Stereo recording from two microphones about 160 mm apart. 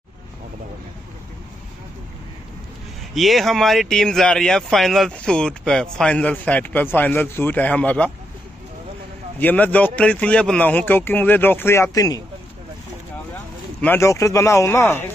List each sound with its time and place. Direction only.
3.2 s speech: centre (ahead or behind)
9.4 s speech: 10° left (ahead or behind)
13.7 s speech: 15° left (ahead or behind)